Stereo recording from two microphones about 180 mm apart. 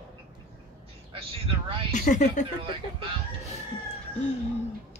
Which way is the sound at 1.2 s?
30° right (ahead or behind).